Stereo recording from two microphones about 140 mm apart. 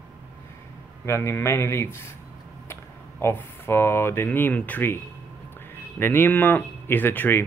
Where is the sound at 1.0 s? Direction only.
20° left (ahead or behind).